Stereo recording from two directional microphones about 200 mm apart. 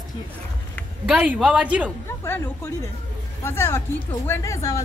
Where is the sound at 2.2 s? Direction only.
10° left (ahead or behind).